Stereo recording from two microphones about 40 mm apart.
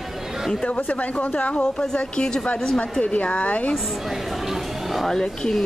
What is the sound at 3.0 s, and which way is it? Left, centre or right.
Speech, left.